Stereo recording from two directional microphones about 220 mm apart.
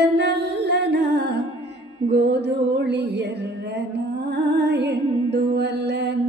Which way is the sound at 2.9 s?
50° right (ahead or behind).